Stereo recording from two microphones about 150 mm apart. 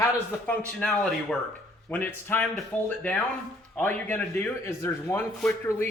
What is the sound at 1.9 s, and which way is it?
Speech, 15° left (ahead or behind).